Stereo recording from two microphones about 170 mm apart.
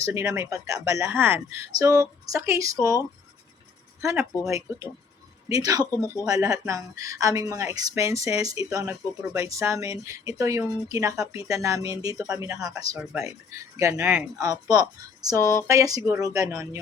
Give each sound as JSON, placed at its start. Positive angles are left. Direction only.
{"t": 0.0, "sound": "speech", "side_deg": -15}
{"t": 4.0, "sound": "speech", "side_deg": -10}